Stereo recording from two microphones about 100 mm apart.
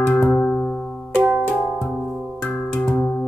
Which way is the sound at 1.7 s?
Centre (ahead or behind).